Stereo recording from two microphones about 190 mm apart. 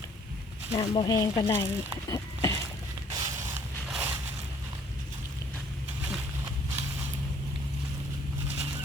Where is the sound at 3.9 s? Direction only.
10° right (ahead or behind).